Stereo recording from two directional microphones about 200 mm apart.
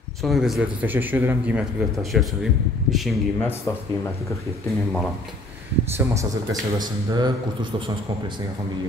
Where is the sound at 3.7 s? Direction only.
20° left (ahead or behind).